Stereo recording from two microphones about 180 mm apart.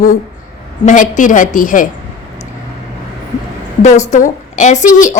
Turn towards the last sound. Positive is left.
turn(degrees=45)  # may be behind; listen again after turning